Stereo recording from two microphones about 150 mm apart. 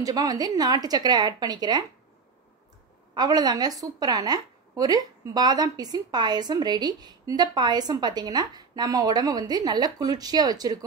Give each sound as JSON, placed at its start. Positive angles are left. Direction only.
{"t": 0.0, "sound": "a woman's voice", "side_deg": -25}
{"t": 3.2, "sound": "a woman's voice", "side_deg": -25}